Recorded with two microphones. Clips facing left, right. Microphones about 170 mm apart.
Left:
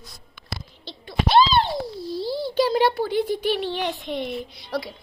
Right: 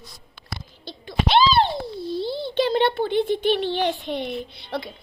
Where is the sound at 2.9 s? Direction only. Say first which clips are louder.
Right 2 dB; 25° right (ahead or behind).